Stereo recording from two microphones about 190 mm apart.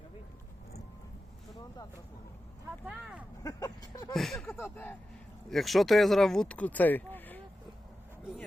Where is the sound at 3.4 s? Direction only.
15° left (ahead or behind).